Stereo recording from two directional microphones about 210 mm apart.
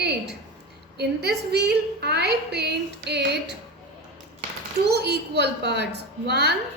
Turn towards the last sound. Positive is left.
turn(degrees=-50)  # may be behind; listen again after turning